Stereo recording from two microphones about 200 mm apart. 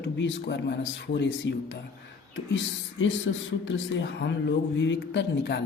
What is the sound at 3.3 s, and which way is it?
A man's voice, 75° left (ahead or behind).